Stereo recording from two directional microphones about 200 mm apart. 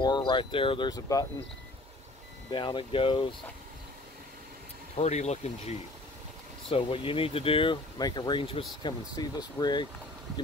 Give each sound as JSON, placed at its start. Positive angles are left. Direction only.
{"t": 0.0, "sound": "speech", "side_deg": 20}
{"t": 2.5, "sound": "speech", "side_deg": 25}
{"t": 4.9, "sound": "speech", "side_deg": 35}